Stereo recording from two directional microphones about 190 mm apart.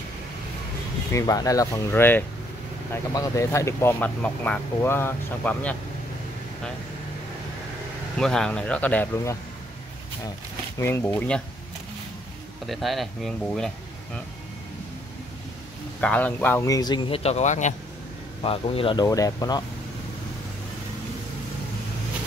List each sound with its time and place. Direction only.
1.1 s speech: 20° left (ahead or behind)
8.2 s speech: 5° left (ahead or behind)
10.8 s speech: 10° left (ahead or behind)
12.6 s speech: centre (ahead or behind)
16.0 s a man's voice: 5° left (ahead or behind)